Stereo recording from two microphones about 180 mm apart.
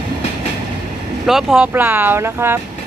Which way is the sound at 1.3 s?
Centre (ahead or behind).